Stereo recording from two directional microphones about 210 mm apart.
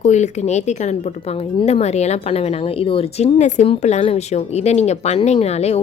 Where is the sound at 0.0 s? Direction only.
35° left (ahead or behind).